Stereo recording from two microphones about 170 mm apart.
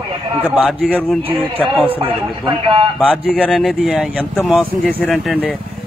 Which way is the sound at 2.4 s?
30° right (ahead or behind).